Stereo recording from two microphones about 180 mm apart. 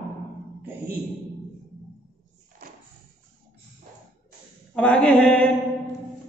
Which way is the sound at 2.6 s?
55° right (ahead or behind).